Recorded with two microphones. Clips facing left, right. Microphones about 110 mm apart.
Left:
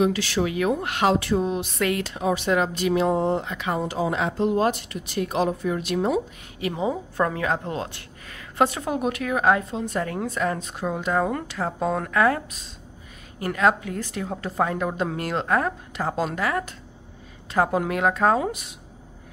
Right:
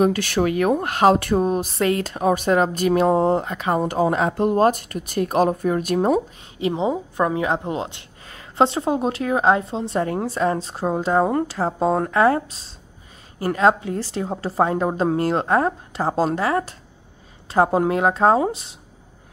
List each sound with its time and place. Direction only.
0.0 s speech: 50° right (ahead or behind)
6.6 s a woman's voice: 25° right (ahead or behind)